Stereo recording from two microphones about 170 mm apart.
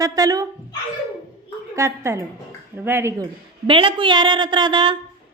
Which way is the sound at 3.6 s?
30° right (ahead or behind).